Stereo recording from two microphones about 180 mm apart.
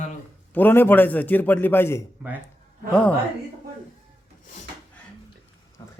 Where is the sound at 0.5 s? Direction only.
10° left (ahead or behind).